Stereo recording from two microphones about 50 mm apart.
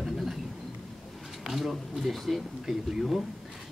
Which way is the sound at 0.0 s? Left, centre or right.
Centre.